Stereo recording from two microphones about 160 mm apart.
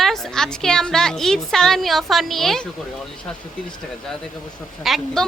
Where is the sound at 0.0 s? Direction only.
5° left (ahead or behind).